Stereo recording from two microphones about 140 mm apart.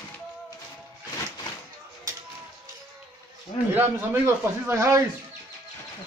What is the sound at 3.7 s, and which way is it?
A man's voice, 15° right (ahead or behind).